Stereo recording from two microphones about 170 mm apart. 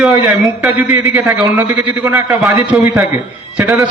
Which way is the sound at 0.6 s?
10° right (ahead or behind).